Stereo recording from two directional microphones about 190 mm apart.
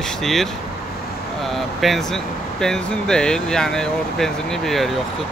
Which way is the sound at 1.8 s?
Centre (ahead or behind).